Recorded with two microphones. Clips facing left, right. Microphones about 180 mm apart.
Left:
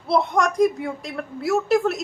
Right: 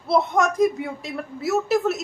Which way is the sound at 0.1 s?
Centre (ahead or behind).